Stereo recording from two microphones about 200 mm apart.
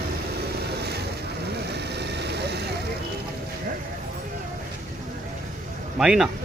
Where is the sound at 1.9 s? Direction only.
55° right (ahead or behind).